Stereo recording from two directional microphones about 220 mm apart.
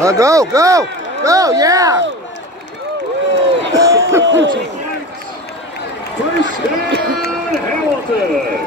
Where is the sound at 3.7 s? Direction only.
15° right (ahead or behind).